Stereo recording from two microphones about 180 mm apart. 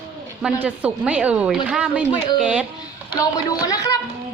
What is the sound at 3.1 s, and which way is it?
Speech, 20° left (ahead or behind).